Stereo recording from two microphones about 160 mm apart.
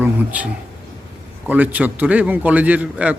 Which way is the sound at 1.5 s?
10° right (ahead or behind).